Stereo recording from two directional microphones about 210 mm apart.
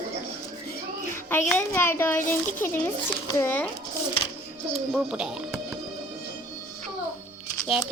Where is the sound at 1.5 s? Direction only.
10° left (ahead or behind).